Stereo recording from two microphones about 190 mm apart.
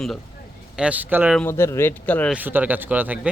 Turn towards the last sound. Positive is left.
turn(degrees=-10)  # may be behind; listen again after turning